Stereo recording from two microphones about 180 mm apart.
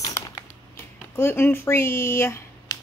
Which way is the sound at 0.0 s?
15° left (ahead or behind).